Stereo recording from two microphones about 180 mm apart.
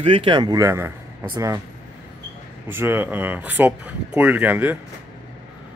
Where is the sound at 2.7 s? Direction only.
10° right (ahead or behind).